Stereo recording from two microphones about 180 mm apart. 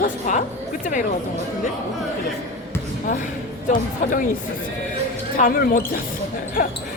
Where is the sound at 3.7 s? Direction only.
50° left (ahead or behind).